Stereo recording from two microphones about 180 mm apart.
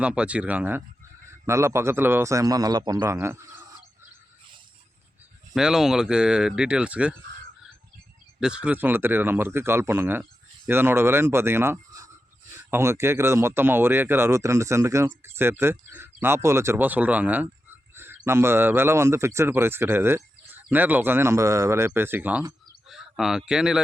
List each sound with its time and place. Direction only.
0.0 s speech: 5° right (ahead or behind)
5.5 s speech: 5° right (ahead or behind)
8.4 s speech: 5° right (ahead or behind)
22.9 s bird: centre (ahead or behind)
23.5 s speech: 5° right (ahead or behind)